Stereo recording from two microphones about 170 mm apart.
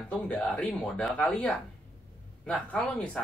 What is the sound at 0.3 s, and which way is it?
Speech, 5° left (ahead or behind).